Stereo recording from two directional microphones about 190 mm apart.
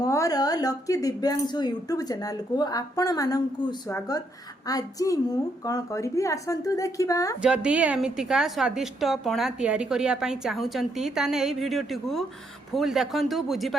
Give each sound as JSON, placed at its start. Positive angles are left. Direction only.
{"t": 0.0, "sound": "speech", "side_deg": 20}
{"t": 7.4, "sound": "a woman's voice", "side_deg": -5}